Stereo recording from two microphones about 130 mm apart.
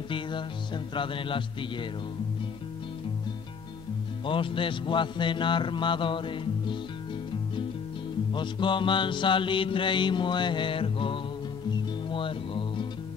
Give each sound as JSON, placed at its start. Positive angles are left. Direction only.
{"t": 0.1, "sound": "mantra", "side_deg": 40}
{"t": 4.3, "sound": "mantra", "side_deg": 40}
{"t": 8.3, "sound": "mantra", "side_deg": 40}
{"t": 12.1, "sound": "music", "side_deg": 40}